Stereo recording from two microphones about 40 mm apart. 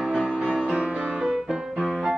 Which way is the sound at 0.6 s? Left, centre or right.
Right.